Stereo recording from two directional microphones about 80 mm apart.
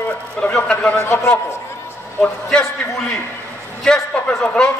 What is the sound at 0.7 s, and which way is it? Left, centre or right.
Speech, centre.